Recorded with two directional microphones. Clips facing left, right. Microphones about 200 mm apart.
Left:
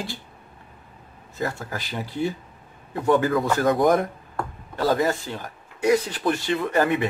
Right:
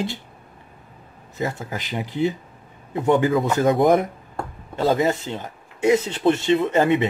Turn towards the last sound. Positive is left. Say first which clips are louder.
# right 4 dB
turn(degrees=-20)  # may be behind; listen again after turning